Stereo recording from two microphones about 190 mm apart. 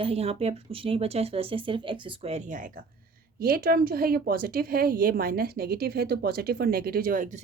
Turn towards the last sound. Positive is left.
turn(degrees=-45)  # may be behind; listen again after turning